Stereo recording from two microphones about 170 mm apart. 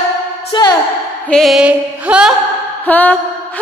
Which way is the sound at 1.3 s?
Centre (ahead or behind).